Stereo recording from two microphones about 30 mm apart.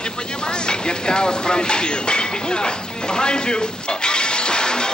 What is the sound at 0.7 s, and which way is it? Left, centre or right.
Speech, left.